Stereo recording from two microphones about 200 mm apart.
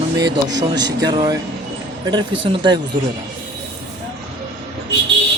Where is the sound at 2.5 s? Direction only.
25° right (ahead or behind).